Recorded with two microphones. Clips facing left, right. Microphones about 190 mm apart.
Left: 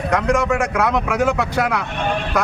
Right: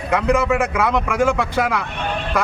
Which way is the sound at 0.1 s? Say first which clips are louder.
Right 1 dB; 5° right (ahead or behind).